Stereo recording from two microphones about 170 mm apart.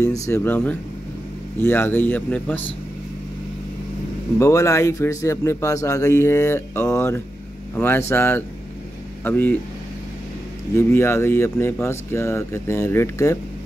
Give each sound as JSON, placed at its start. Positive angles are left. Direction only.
{"t": 0.0, "sound": "a man's voice", "side_deg": 20}
{"t": 4.4, "sound": "a man's voice", "side_deg": 15}
{"t": 10.8, "sound": "a man's voice", "side_deg": 15}